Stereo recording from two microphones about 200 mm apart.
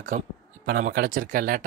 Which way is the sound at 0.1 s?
40° right (ahead or behind).